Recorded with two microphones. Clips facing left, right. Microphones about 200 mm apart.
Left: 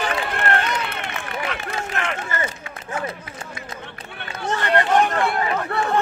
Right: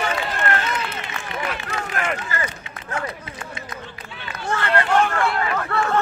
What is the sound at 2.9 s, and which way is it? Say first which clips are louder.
Run: left 1 dB; 20° left (ahead or behind).